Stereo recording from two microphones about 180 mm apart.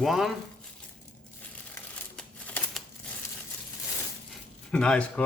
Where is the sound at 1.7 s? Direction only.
10° left (ahead or behind).